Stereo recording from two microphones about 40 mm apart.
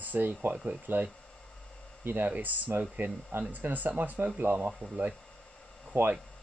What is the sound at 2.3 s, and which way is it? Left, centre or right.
Speech, right.